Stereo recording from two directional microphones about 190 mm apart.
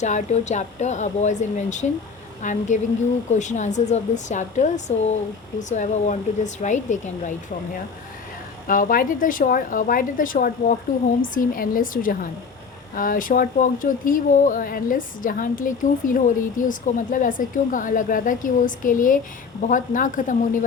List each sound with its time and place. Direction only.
0.0 s speech: 40° left (ahead or behind)
8.6 s speech: 45° left (ahead or behind)